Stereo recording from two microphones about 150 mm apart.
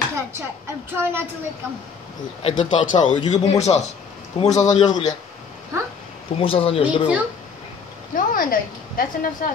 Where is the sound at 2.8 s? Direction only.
55° left (ahead or behind).